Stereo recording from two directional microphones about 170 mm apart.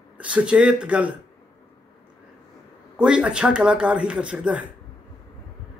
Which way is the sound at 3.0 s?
5° right (ahead or behind).